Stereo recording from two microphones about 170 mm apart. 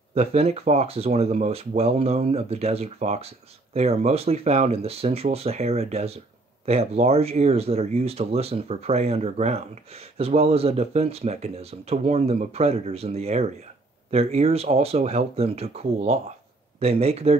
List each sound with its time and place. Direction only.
0.1 s speech: 35° right (ahead or behind)